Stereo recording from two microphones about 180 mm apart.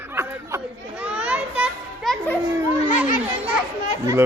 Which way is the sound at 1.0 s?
5° right (ahead or behind).